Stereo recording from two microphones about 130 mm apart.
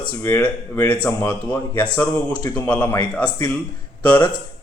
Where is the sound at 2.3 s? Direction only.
35° left (ahead or behind).